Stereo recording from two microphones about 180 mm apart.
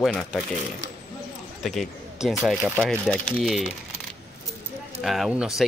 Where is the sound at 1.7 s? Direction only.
Centre (ahead or behind).